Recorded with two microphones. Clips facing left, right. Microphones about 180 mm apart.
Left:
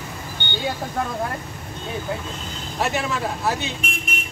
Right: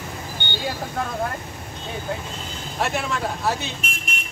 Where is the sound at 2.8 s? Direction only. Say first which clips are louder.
Left 1 dB; centre (ahead or behind).